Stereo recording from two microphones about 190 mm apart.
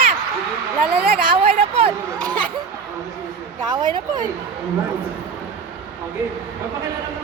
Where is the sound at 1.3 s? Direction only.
30° right (ahead or behind).